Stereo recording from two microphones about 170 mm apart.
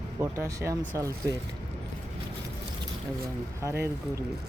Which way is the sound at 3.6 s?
15° right (ahead or behind).